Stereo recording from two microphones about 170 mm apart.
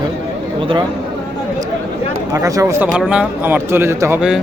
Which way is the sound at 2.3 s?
20° right (ahead or behind).